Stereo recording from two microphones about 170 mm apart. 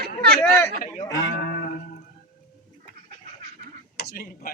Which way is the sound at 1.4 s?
65° left (ahead or behind).